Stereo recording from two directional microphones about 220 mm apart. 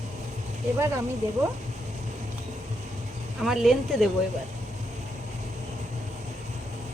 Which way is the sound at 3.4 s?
Centre (ahead or behind).